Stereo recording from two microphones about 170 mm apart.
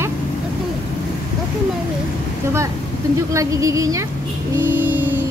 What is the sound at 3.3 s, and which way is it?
Speech, 20° right (ahead or behind).